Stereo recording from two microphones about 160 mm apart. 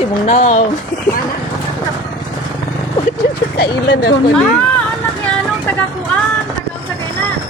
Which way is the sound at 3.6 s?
85° left.